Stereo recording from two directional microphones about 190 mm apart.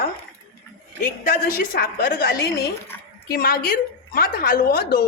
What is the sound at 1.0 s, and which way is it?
Speech, 45° left (ahead or behind).